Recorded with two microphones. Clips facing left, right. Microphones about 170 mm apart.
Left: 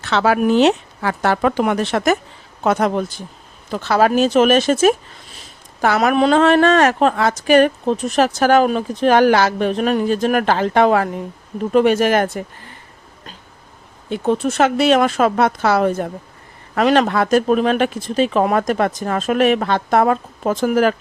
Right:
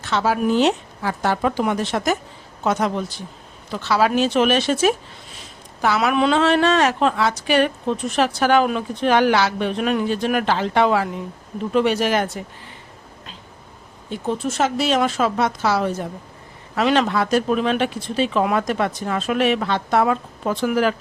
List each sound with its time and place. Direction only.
0.0 s speech: 75° left (ahead or behind)
2.6 s a woman's voice: 55° left (ahead or behind)
14.1 s a woman's voice: 65° left (ahead or behind); by 20.9 s 45° left (ahead or behind)